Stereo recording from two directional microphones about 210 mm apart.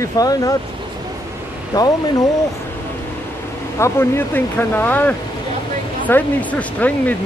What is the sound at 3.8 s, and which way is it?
Speech, 10° left (ahead or behind).